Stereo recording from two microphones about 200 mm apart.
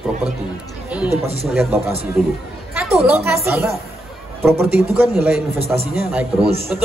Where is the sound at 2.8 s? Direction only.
5° right (ahead or behind).